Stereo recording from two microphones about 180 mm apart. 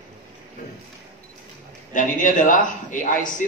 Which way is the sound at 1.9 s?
45° left (ahead or behind).